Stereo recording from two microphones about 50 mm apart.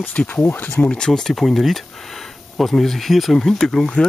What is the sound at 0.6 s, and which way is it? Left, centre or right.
Speech, left.